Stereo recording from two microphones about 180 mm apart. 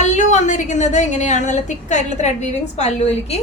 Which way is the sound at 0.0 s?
40° left (ahead or behind).